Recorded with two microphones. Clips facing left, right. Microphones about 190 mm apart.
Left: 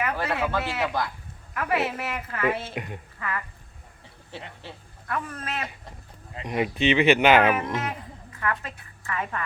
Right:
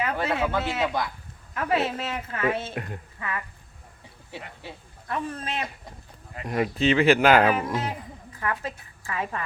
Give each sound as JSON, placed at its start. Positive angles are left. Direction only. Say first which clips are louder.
{"t": 0.0, "sound": "a woman's voice", "louder": "right 1 dB", "side_deg": -25}
{"t": 2.7, "sound": "speech", "louder": "even", "side_deg": 10}
{"t": 3.2, "sound": "a woman's voice", "louder": "left 1 dB", "side_deg": -20}
{"t": 4.6, "sound": "speech", "louder": "right 1 dB", "side_deg": -15}
{"t": 5.0, "sound": "a woman's voice", "louder": "right 1 dB", "side_deg": -25}
{"t": 6.3, "sound": "speech", "louder": "even", "side_deg": 20}
{"t": 7.8, "sound": "speech", "louder": "right 1 dB", "side_deg": -35}